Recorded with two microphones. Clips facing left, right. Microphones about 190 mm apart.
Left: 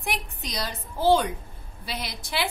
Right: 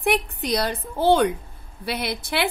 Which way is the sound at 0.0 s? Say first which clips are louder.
Right 10 dB; 60° right (ahead or behind).